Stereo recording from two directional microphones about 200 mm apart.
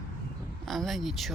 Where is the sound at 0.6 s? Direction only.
Centre (ahead or behind).